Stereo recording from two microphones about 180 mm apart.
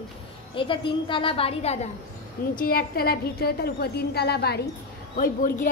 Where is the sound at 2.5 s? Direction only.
55° left (ahead or behind).